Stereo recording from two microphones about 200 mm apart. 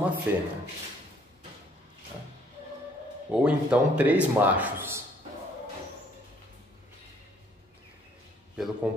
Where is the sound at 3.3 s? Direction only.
5° right (ahead or behind).